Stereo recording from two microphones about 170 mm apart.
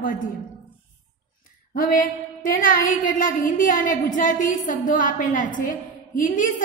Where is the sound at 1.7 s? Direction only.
55° left (ahead or behind).